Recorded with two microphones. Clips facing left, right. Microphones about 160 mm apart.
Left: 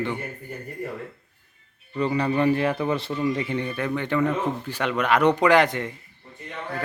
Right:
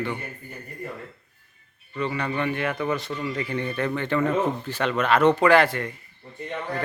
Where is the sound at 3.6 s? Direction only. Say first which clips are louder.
Even; 10° left (ahead or behind).